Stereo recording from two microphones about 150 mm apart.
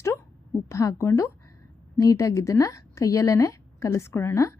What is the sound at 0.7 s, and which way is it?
Speech, 20° left (ahead or behind).